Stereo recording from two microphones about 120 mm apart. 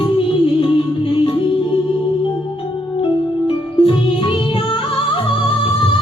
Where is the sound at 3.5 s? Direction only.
50° left (ahead or behind).